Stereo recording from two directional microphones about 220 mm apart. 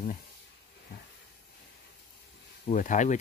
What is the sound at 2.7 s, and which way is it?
Speech, 35° left (ahead or behind).